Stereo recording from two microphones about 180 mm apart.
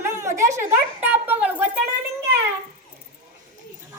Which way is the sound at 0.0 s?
15° right (ahead or behind).